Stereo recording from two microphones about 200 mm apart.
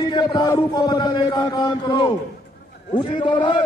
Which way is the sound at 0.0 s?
20° left (ahead or behind).